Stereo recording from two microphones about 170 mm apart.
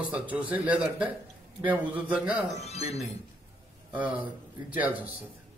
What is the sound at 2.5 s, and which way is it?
Speech, 40° left (ahead or behind).